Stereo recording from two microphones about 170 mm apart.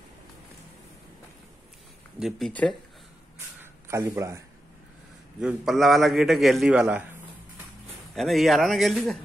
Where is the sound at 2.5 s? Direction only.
10° left (ahead or behind).